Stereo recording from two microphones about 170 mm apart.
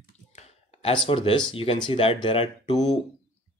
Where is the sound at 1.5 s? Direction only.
35° left (ahead or behind).